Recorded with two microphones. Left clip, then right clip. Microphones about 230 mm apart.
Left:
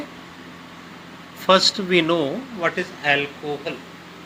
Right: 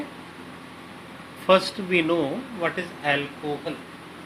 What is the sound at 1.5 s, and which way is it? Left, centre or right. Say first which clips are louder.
A man's voice: left 3 dB; left.